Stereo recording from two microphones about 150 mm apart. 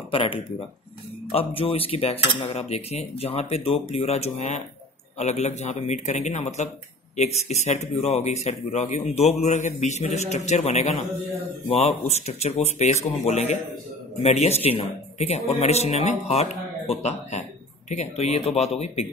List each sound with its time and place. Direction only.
0.1 s speech: 35° left (ahead or behind)